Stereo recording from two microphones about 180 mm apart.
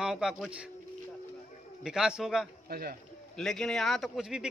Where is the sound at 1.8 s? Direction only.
5° right (ahead or behind).